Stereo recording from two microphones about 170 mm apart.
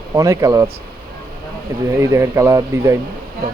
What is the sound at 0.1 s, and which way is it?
Speech, 20° right (ahead or behind).